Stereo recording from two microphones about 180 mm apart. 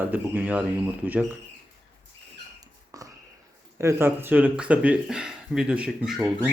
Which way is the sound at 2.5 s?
20° right (ahead or behind).